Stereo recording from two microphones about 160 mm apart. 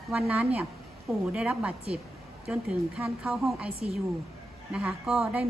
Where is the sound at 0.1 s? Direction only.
5° right (ahead or behind).